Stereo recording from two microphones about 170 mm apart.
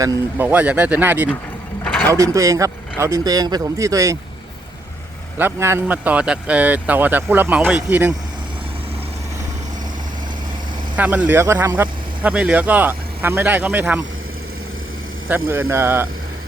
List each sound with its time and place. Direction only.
0.0 s speech: 20° right (ahead or behind)
0.4 s speech: 10° right (ahead or behind)
1.8 s mechanisms: centre (ahead or behind)
2.0 s speech: 20° right (ahead or behind)
5.4 s speech: 15° right (ahead or behind)
10.9 s speech: 10° right (ahead or behind)
15.3 s speech: 15° right (ahead or behind)